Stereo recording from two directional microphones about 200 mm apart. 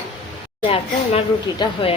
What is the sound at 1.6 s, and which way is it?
Speech, 25° left (ahead or behind).